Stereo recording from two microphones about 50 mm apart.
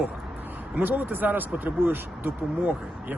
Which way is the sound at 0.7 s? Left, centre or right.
Right.